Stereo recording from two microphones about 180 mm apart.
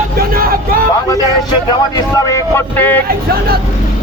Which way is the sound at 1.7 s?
20° left (ahead or behind).